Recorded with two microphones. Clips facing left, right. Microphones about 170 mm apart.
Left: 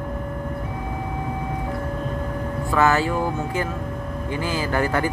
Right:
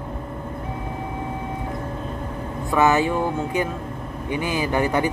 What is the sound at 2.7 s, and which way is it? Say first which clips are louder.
Speech: right 1 dB; 20° right (ahead or behind).